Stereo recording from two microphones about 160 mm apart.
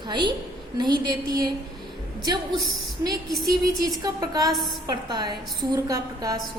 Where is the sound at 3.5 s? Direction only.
25° right (ahead or behind).